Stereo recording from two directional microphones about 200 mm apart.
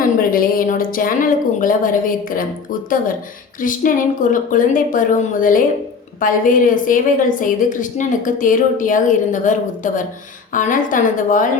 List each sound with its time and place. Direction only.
0.0 s a woman's voice: 45° left (ahead or behind)
3.6 s a woman's voice: 40° left (ahead or behind)